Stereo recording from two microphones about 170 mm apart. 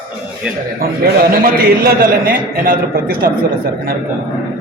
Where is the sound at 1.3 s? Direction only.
60° right (ahead or behind).